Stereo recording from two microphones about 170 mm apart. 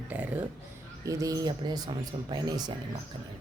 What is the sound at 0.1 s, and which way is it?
Speech, 10° right (ahead or behind).